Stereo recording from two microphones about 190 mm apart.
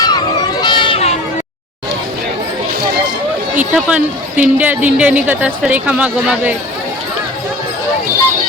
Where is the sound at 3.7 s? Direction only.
5° right (ahead or behind).